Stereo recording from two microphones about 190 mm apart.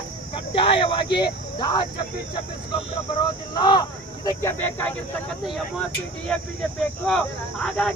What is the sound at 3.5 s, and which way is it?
Speech, 25° left (ahead or behind).